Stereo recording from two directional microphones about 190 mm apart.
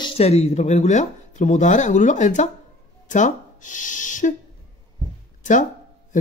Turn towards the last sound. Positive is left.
turn(degrees=40)  # may be behind; listen again after turning